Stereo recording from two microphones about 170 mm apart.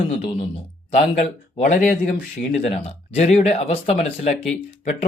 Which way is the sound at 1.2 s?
45° left (ahead or behind).